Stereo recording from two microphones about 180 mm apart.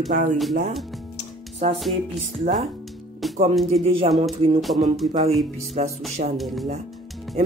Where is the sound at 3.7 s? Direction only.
35° right (ahead or behind).